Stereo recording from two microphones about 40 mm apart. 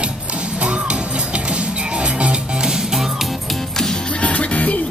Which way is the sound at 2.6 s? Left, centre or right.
Centre.